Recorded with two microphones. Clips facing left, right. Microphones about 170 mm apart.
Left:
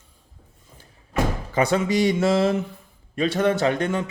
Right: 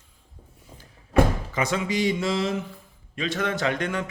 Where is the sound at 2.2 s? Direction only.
60° left (ahead or behind).